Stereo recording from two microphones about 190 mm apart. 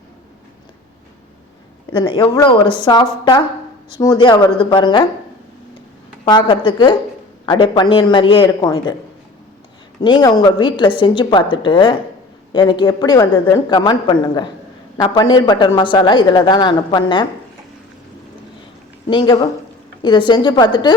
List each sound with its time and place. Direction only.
1.9 s a man's voice: 25° left (ahead or behind)
6.2 s a man's voice: 25° left (ahead or behind)
10.0 s a man's voice: 25° left (ahead or behind)
19.1 s a man's voice: 20° left (ahead or behind)